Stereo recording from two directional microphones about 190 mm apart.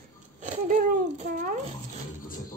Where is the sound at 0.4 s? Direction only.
40° right (ahead or behind).